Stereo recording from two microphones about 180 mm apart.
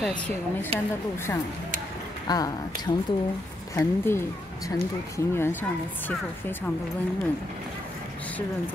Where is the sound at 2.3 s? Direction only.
20° left (ahead or behind).